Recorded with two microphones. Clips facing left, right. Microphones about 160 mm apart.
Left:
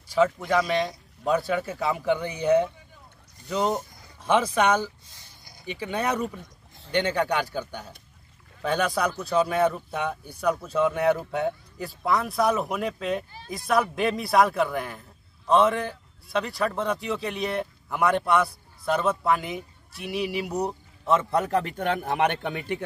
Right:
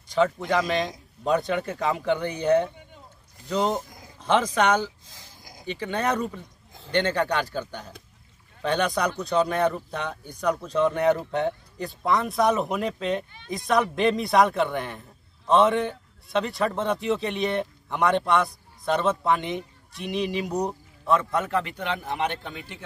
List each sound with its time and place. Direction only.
0.1 s speech: 5° left (ahead or behind)
5.0 s a sound: 90° right
5.7 s a man's voice: 10° left (ahead or behind)
21.0 s a man's voice: 25° left (ahead or behind); by 22.1 s 50° left (ahead or behind)
22.1 s a man's voice: 65° left (ahead or behind)